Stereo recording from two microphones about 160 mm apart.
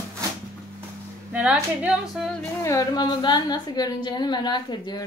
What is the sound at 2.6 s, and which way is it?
A woman's voice, 20° left (ahead or behind).